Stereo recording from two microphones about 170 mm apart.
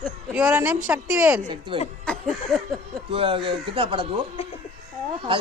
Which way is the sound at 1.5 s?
30° right (ahead or behind).